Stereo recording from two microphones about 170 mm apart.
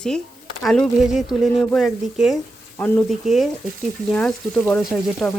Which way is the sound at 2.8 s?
10° left (ahead or behind).